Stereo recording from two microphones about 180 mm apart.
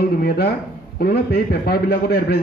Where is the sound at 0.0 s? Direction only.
60° left (ahead or behind).